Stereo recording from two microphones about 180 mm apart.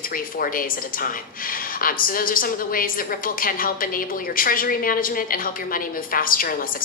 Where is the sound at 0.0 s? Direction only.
50° left (ahead or behind).